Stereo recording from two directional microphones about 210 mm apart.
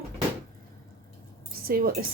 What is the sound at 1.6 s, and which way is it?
Speech, 45° right (ahead or behind).